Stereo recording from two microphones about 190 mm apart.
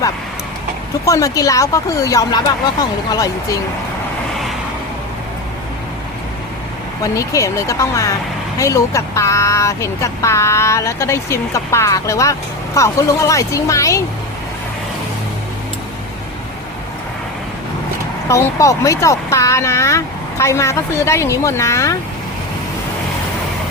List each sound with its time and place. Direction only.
1.0 s speech: 15° left (ahead or behind)
7.0 s speech: 15° left (ahead or behind)
18.3 s speech: 15° left (ahead or behind)